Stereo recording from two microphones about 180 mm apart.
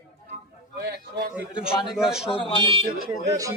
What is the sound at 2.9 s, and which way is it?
Speech, 60° right (ahead or behind).